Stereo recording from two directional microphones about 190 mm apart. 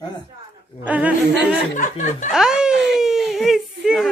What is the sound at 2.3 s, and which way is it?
Speech, 5° right (ahead or behind).